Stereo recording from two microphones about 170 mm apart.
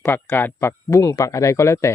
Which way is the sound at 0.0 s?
15° left (ahead or behind).